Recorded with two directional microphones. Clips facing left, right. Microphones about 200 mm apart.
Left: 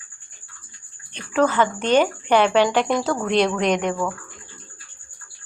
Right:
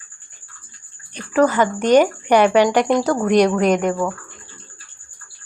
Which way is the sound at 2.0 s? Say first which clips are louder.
Right 3 dB; 10° right (ahead or behind).